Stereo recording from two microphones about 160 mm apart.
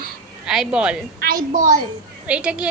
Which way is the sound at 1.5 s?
55° right (ahead or behind).